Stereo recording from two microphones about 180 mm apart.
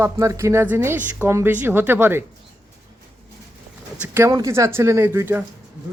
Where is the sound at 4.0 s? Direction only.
15° right (ahead or behind).